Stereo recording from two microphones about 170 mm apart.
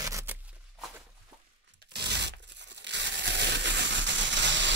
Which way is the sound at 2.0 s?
85° right.